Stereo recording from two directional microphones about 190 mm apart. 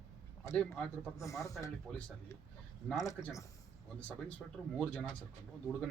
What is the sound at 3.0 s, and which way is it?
Speech, 15° left (ahead or behind).